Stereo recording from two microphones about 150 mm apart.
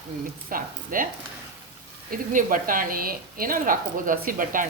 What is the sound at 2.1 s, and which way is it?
Speech, 65° right (ahead or behind).